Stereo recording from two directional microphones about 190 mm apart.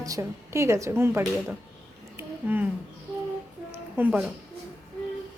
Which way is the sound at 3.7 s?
10° right (ahead or behind).